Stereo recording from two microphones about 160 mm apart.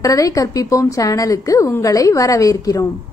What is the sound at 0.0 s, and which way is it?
A woman's voice, 20° left (ahead or behind).